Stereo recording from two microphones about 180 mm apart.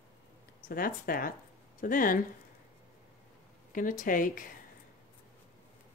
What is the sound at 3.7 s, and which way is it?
Speech, 45° left (ahead or behind).